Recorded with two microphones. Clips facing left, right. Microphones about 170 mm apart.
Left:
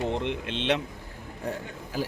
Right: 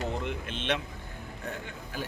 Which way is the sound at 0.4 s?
90° left.